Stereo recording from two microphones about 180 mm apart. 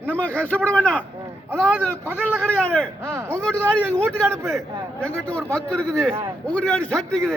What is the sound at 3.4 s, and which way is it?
A man's voice, 5° left (ahead or behind).